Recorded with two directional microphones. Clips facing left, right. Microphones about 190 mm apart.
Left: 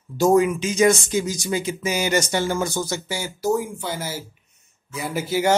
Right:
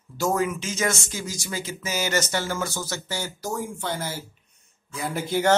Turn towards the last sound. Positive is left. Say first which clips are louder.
# left 2 dB
turn(degrees=5)  # may be behind; listen again after turning